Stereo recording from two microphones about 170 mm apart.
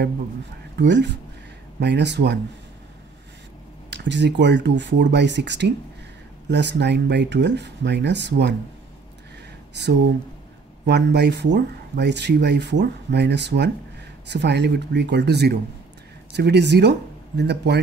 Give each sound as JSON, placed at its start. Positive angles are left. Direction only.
{"t": 0.7, "sound": "speech", "side_deg": -90}
{"t": 3.9, "sound": "speech", "side_deg": -90}
{"t": 10.9, "sound": "speech", "side_deg": -90}
{"t": 16.3, "sound": "speech", "side_deg": -90}